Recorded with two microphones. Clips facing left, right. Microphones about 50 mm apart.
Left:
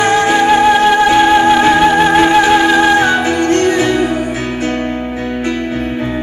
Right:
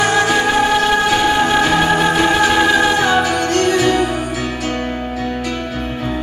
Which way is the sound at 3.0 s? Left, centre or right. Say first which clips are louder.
Left 3 dB; left.